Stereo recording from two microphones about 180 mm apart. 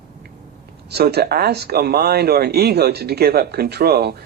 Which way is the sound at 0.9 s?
60° right (ahead or behind).